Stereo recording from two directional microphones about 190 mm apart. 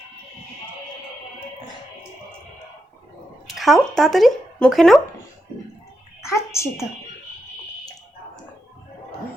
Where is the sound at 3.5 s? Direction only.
Centre (ahead or behind).